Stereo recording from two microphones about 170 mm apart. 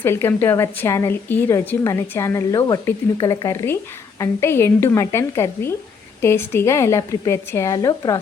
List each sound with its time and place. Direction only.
0.0 s a woman's voice: 15° left (ahead or behind)